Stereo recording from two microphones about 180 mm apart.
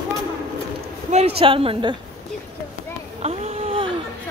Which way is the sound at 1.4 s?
30° right (ahead or behind).